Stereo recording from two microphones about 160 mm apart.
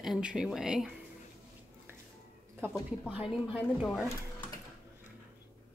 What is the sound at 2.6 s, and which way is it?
A woman's voice, 10° right (ahead or behind).